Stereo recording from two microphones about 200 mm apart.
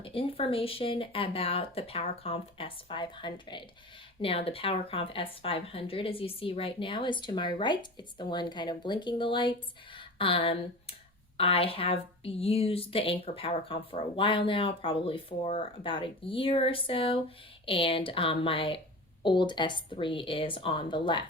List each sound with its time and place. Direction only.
0.0 s speech: 25° left (ahead or behind)